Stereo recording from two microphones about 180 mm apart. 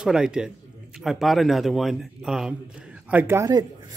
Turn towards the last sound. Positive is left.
turn(degrees=-20)  # may be behind; listen again after turning